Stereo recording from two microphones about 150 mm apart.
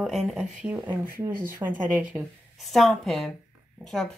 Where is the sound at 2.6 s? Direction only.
Centre (ahead or behind).